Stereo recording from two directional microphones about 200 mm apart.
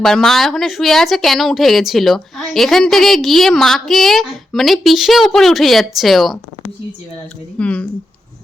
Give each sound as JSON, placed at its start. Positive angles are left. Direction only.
{"t": 0.0, "sound": "speech", "side_deg": 0}
{"t": 7.6, "sound": "speech", "side_deg": 5}